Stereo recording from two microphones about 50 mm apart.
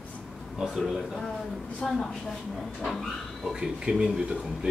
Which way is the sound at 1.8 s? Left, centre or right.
Centre.